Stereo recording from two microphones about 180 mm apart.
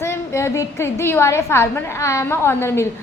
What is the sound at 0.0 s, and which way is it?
A woman's voice, 15° left (ahead or behind).